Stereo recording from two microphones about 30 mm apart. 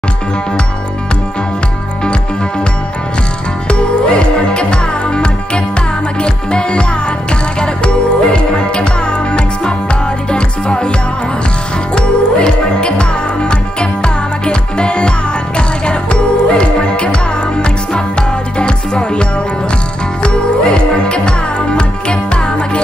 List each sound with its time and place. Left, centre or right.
3.6 s music: left
10.3 s music: left
11.9 s music: left
20.2 s music: left